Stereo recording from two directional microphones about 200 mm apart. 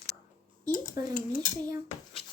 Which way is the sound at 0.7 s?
45° left (ahead or behind).